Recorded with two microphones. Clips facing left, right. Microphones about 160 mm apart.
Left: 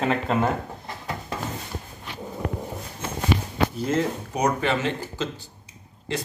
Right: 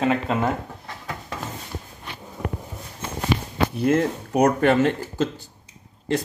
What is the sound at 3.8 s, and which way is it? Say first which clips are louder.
Speech: right 4 dB; 60° right (ahead or behind).